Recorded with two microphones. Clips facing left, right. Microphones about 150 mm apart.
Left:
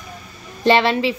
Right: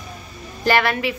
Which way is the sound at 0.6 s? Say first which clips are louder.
Left 4 dB; 25° left (ahead or behind).